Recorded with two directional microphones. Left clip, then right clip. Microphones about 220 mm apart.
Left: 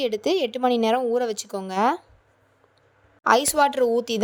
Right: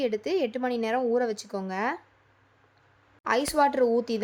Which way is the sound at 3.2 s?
30° left (ahead or behind).